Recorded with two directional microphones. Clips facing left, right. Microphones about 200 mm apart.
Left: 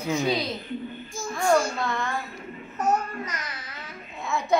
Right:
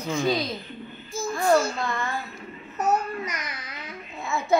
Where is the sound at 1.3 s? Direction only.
5° right (ahead or behind).